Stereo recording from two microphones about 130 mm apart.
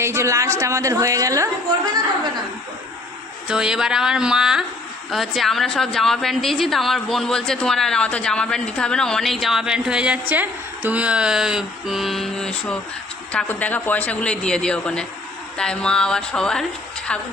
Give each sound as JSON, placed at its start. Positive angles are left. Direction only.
{"t": 0.0, "sound": "a woman's voice", "side_deg": -20}
{"t": 3.5, "sound": "a woman's voice", "side_deg": -5}